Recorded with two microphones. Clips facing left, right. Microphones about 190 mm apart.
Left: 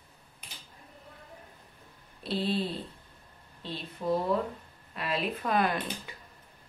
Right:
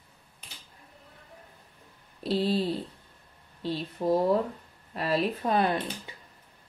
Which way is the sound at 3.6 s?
40° right (ahead or behind).